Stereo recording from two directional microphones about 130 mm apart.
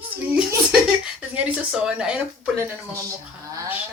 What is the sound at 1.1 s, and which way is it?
Speech, 10° right (ahead or behind).